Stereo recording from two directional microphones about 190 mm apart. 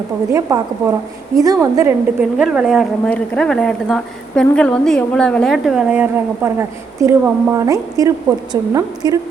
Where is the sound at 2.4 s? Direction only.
5° right (ahead or behind); by 9.2 s 20° right (ahead or behind).